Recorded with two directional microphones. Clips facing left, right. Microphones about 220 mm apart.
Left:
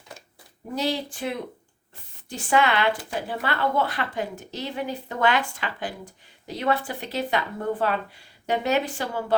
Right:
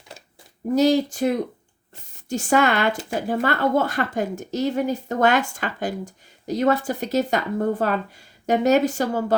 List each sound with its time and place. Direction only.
0.8 s a woman's voice: 45° right (ahead or behind)